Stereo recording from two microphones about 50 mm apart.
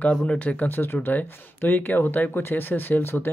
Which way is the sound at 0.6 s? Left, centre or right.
Left.